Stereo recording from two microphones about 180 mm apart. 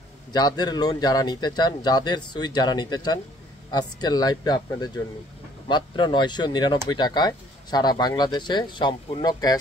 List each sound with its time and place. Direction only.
0.3 s speech: 20° left (ahead or behind)